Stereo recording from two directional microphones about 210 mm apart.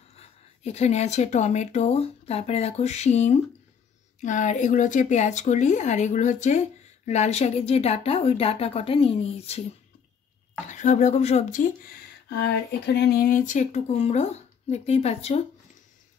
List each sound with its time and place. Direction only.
0.1 s speech: 30° left (ahead or behind)
10.7 s speech: 35° left (ahead or behind)
11.8 s speech: 50° left (ahead or behind); by 15.4 s 30° left (ahead or behind)